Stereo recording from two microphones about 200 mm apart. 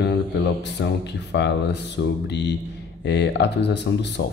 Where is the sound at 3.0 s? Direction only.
60° left (ahead or behind).